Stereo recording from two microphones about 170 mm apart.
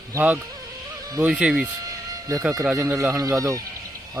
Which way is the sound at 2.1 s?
20° right (ahead or behind).